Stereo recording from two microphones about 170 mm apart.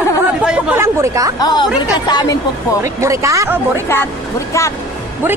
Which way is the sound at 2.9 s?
20° right (ahead or behind).